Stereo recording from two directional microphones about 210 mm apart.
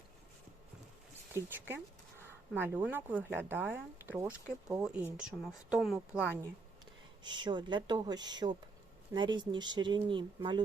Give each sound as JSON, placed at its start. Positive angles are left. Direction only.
{"t": 1.3, "sound": "a sound", "side_deg": -10}
{"t": 2.5, "sound": "speech", "side_deg": -10}
{"t": 7.3, "sound": "speech", "side_deg": -20}